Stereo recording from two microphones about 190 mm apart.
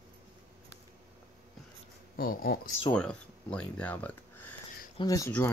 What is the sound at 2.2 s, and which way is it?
Speech, 50° left (ahead or behind).